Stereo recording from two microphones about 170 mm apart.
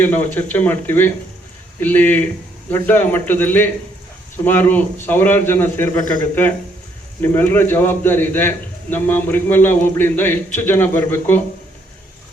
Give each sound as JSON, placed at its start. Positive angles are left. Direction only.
{"t": 0.0, "sound": "a man's voice", "side_deg": 10}
{"t": 7.2, "sound": "a man's voice", "side_deg": 10}